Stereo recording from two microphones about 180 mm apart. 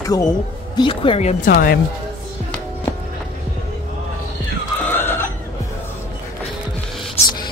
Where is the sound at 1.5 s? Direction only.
55° left (ahead or behind).